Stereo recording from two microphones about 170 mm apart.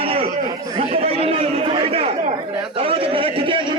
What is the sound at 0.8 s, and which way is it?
Chatter, 35° right (ahead or behind).